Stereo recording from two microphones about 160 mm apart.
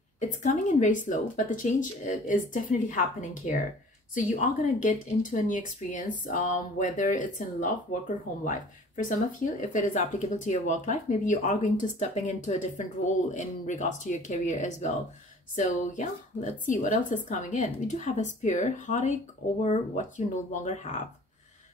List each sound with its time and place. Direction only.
0.2 s speech: 50° left (ahead or behind)